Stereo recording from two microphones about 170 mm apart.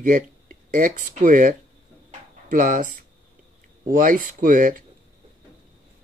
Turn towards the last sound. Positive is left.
turn(degrees=-55)  # may be behind; listen again after turning